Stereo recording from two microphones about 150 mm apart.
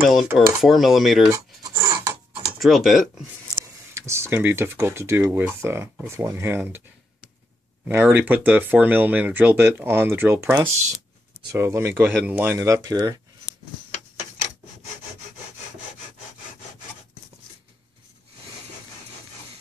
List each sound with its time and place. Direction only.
0.0 s dishes: 5° right (ahead or behind)
1.3 s a sound: 20° right (ahead or behind)
2.6 s dishes: centre (ahead or behind)
3.9 s speech: 20° right (ahead or behind)
7.9 s speech: 10° right (ahead or behind)